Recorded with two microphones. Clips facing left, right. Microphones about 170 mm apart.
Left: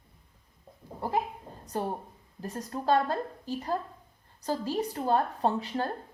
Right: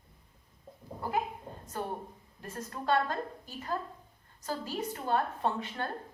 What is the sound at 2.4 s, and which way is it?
A woman's voice, 35° left (ahead or behind).